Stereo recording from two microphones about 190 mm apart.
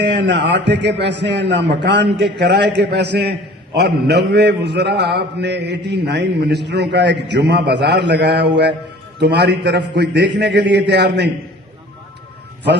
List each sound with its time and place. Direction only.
0.0 s a man's voice: 65° right (ahead or behind)